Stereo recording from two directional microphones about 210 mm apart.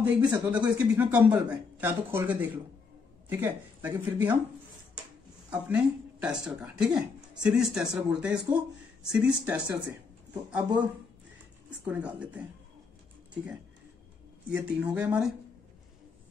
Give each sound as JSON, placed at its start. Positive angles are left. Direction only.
{"t": 0.0, "sound": "speech", "side_deg": -5}
{"t": 5.5, "sound": "speech", "side_deg": -5}
{"t": 14.5, "sound": "speech", "side_deg": -5}